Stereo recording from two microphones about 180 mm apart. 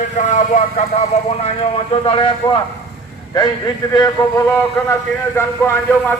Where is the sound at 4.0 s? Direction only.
20° left (ahead or behind).